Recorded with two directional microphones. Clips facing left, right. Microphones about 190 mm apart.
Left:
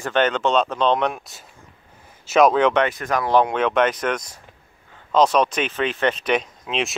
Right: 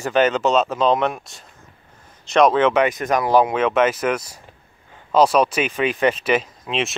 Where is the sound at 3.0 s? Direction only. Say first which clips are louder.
Right 3 dB; 20° right (ahead or behind).